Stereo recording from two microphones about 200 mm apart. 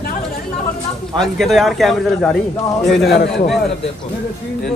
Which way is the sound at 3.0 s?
55° left (ahead or behind).